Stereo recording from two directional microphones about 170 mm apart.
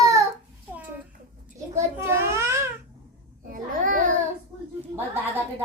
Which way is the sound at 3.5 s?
50° right (ahead or behind).